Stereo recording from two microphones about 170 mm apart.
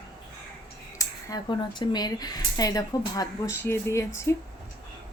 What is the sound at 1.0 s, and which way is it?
A woman's voice, 20° left (ahead or behind).